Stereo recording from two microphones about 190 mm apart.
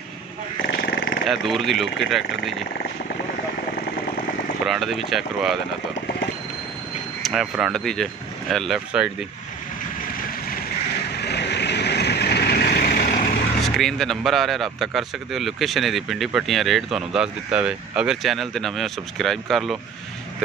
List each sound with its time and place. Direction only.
0.7 s dog: 55° left (ahead or behind)
1.3 s speech: centre (ahead or behind)
4.6 s speech: centre (ahead or behind)
7.2 s speech: centre (ahead or behind)
11.1 s vehicle: 60° left (ahead or behind)
13.6 s speech: centre (ahead or behind)